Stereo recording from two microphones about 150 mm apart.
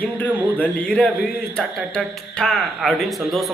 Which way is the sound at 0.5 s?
10° left (ahead or behind).